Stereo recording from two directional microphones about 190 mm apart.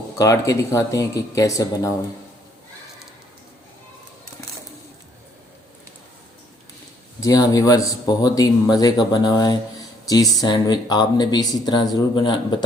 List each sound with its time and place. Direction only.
0.2 s speech: 15° left (ahead or behind)
7.2 s speech: 20° left (ahead or behind)